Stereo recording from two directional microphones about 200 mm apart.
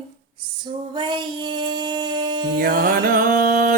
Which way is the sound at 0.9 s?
25° right (ahead or behind).